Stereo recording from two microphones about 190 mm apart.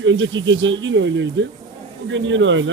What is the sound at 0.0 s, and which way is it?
Speech, 85° right.